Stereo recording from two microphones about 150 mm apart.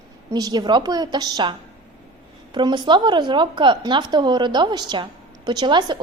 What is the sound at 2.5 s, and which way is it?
A woman's voice, 30° right (ahead or behind).